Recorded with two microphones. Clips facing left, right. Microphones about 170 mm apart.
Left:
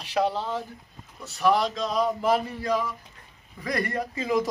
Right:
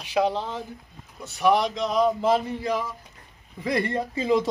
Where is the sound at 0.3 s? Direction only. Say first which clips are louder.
Even; 15° right (ahead or behind).